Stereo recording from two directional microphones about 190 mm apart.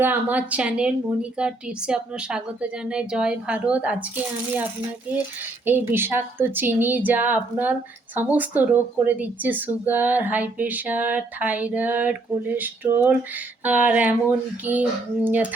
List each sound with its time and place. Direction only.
0.0 s a woman's voice: 10° right (ahead or behind)